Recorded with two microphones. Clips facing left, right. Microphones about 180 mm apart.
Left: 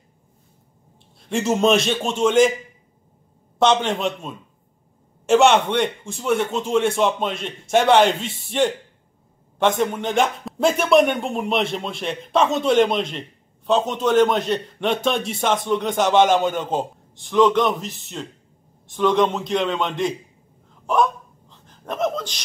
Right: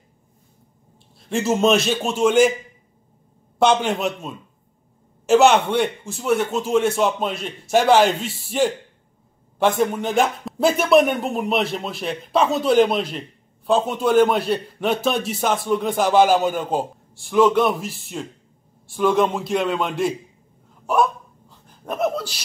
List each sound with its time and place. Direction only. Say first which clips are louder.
1.2 s speech: even; centre (ahead or behind)
3.6 s a man's voice: even; 5° right (ahead or behind)
20.8 s hiccup: even; 5° right (ahead or behind)